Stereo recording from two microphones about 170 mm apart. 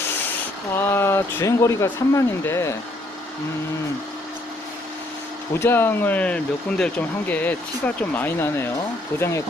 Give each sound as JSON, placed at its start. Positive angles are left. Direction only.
{"t": 0.8, "sound": "speech", "side_deg": 15}
{"t": 5.5, "sound": "speech", "side_deg": 15}